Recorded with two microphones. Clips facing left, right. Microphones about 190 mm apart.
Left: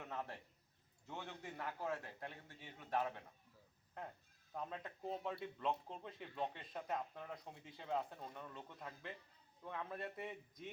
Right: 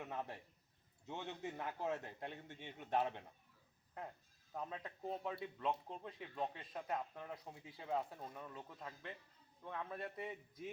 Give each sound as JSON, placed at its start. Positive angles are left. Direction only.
{"t": 0.0, "sound": "a man's voice", "side_deg": -15}
{"t": 4.5, "sound": "speech", "side_deg": 0}